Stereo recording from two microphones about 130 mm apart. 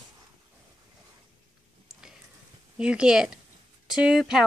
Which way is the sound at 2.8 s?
5° right (ahead or behind).